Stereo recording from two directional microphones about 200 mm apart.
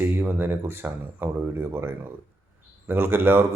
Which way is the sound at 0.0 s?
10° right (ahead or behind).